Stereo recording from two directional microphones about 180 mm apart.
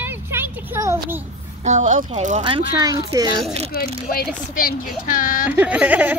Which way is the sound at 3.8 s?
55° left (ahead or behind).